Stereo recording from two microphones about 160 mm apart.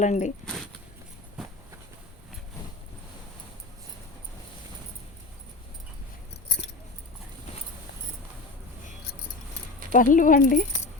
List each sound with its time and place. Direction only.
0.0 s speech: 50° left (ahead or behind)
1.4 s train: 5° right (ahead or behind)
9.9 s speech: 55° left (ahead or behind)